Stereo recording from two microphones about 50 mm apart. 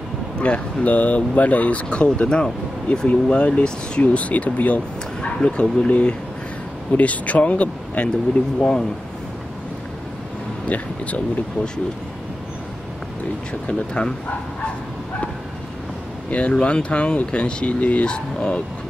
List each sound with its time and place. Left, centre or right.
0.4 s speech: left
8.5 s speech: centre
10.7 s speech: left
13.5 s speech: left
16.3 s speech: left